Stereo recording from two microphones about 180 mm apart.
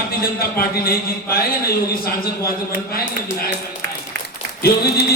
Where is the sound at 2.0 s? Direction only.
55° left (ahead or behind).